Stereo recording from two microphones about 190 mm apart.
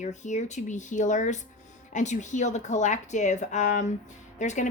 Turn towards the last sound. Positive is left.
turn(degrees=40)  # may be behind; listen again after turning